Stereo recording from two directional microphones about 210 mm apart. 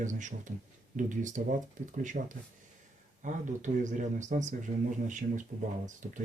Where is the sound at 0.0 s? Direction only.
35° right (ahead or behind).